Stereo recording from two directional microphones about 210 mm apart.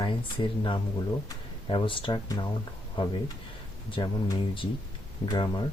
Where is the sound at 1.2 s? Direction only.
25° left (ahead or behind).